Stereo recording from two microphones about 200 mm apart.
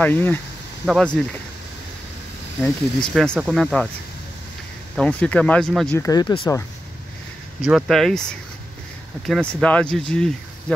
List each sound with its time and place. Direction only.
0.0 s speech: 10° left (ahead or behind)
2.6 s speech: 5° left (ahead or behind)
4.9 s speech: 5° left (ahead or behind)
5.9 s speech: 20° left (ahead or behind)
7.6 s speech: centre (ahead or behind)